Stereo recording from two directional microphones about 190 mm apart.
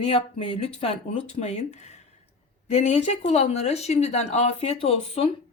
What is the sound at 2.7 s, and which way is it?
Speech, 35° left (ahead or behind).